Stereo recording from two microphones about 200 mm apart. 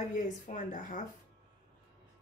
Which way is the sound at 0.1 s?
40° left (ahead or behind).